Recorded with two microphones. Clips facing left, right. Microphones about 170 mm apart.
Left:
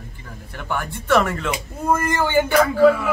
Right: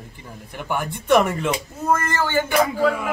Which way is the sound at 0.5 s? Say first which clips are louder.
Right 1 dB; 15° right (ahead or behind).